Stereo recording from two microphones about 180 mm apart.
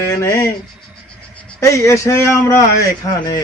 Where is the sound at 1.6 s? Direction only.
15° left (ahead or behind).